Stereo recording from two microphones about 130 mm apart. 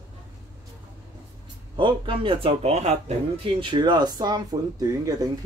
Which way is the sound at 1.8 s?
40° right (ahead or behind).